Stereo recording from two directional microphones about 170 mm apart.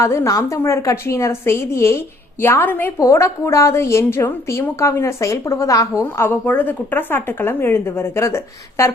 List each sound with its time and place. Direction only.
0.0 s a woman's voice: 15° left (ahead or behind)